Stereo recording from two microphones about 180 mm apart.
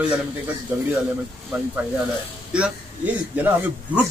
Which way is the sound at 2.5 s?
5° right (ahead or behind).